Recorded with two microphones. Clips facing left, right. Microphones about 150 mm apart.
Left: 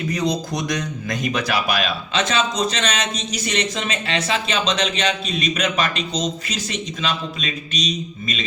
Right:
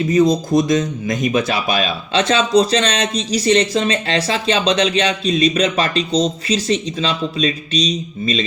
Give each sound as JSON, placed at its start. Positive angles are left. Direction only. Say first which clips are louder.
{"t": 0.1, "sound": "speech", "louder": "right 10 dB", "side_deg": -25}